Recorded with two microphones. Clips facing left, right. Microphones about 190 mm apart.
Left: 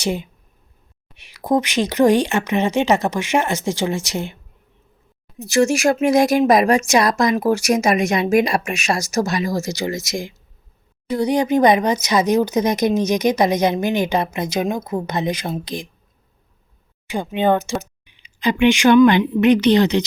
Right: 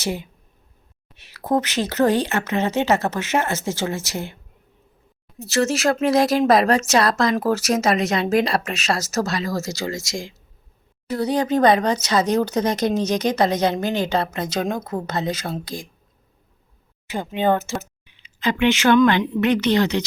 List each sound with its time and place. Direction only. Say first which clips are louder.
0.0 s speech: left 4 dB; 20° left (ahead or behind)
5.4 s speech: left 4 dB; 15° left (ahead or behind)
17.1 s speech: left 2 dB; 15° left (ahead or behind)